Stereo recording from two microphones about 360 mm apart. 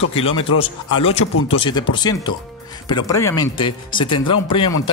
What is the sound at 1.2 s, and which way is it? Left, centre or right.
Speech, left.